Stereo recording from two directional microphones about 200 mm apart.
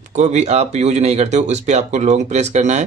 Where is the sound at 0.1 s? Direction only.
35° right (ahead or behind).